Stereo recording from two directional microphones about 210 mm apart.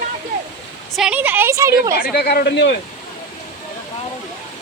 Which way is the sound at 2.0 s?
50° left (ahead or behind).